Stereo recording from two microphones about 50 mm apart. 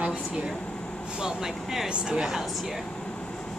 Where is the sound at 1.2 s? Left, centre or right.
Centre.